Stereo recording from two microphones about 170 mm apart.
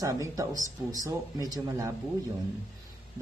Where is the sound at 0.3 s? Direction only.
20° right (ahead or behind).